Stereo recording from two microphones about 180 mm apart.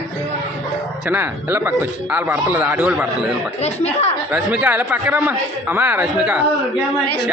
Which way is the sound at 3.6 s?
35° left (ahead or behind).